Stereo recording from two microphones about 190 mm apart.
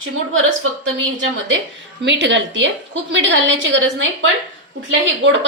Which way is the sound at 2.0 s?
70° right (ahead or behind).